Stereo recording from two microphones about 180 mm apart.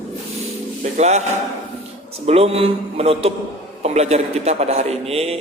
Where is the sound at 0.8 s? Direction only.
40° right (ahead or behind).